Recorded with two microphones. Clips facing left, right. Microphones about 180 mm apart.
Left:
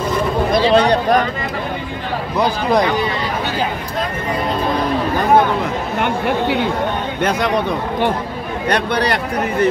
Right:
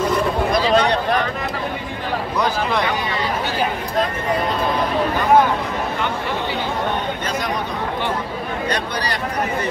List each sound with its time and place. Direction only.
0.6 s speech: 35° left (ahead or behind)
2.3 s speech: 30° left (ahead or behind)
5.9 s speech: 60° left (ahead or behind)
8.6 s speech: 60° left (ahead or behind)